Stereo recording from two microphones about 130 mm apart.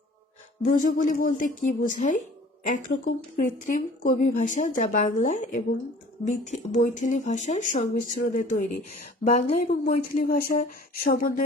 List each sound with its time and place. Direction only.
0.6 s speech: 90° left; by 2.1 s 70° left (ahead or behind)
2.6 s a woman's voice: 90° left
6.2 s a woman's voice: 70° left (ahead or behind)
9.2 s speech: 65° left (ahead or behind); by 11.4 s 90° left